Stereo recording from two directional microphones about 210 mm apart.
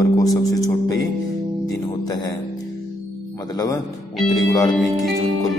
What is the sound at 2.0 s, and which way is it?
Speech, 20° left (ahead or behind).